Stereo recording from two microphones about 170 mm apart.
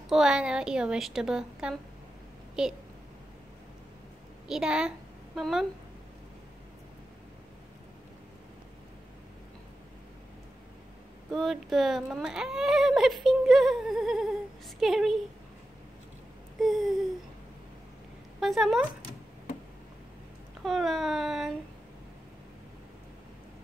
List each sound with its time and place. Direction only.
0.1 s speech: 5° right (ahead or behind)
4.5 s a woman's voice: 5° right (ahead or behind)
11.3 s speech: centre (ahead or behind)
16.5 s speech: centre (ahead or behind)
18.4 s speech: centre (ahead or behind)
20.6 s speech: centre (ahead or behind)